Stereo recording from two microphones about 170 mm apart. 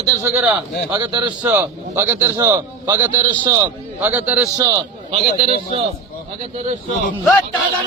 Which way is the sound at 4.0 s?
10° right (ahead or behind).